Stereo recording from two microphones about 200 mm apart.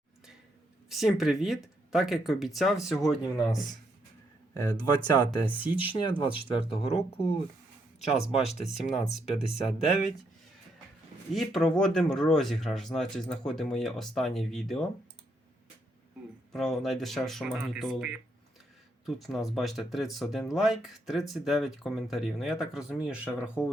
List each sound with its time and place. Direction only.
0.9 s speech: centre (ahead or behind)
4.5 s speech: 20° left (ahead or behind)
5.5 s speech: 10° right (ahead or behind)
5.8 s speech: 25° left (ahead or behind)
11.3 s speech: centre (ahead or behind)
16.5 s speech: centre (ahead or behind)
23.2 s speech: 10° left (ahead or behind)